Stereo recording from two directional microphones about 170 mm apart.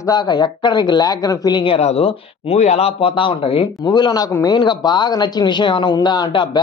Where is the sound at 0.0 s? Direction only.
25° left (ahead or behind).